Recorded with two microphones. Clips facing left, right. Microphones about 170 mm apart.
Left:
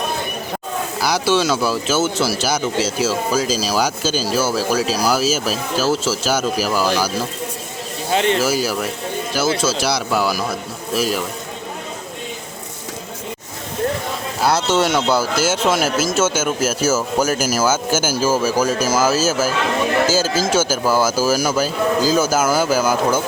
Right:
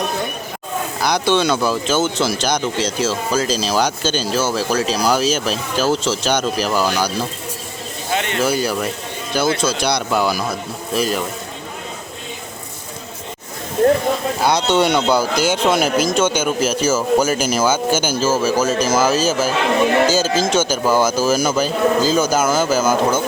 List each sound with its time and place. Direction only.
1.0 s speech: 5° left (ahead or behind)
8.1 s speech: 30° left (ahead or behind)
8.4 s speech: 5° left (ahead or behind)
14.4 s speech: 5° left (ahead or behind)